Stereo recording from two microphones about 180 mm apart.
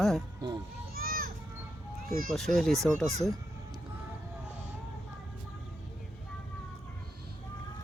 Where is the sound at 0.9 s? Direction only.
55° right (ahead or behind).